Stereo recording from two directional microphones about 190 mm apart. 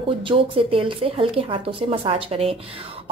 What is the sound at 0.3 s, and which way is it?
A woman's voice, 30° right (ahead or behind).